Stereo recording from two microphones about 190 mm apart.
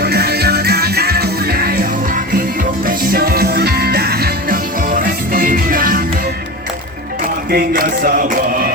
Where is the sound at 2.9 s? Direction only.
50° right (ahead or behind).